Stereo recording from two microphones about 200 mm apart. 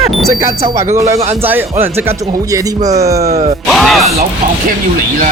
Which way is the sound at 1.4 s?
10° right (ahead or behind).